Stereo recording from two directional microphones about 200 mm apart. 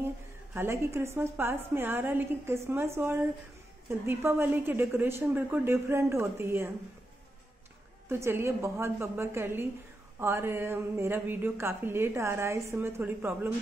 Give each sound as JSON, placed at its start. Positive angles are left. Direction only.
{"t": 0.6, "sound": "a woman's voice", "side_deg": -15}
{"t": 8.1, "sound": "a woman's voice", "side_deg": -10}